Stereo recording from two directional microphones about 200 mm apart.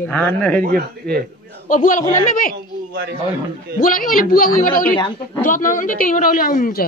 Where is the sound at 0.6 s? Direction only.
50° right (ahead or behind).